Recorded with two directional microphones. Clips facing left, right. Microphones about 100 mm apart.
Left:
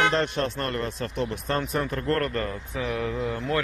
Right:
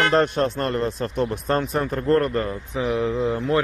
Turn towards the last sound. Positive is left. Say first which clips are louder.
# right 6 dB
turn(degrees=-25)  # may be behind; listen again after turning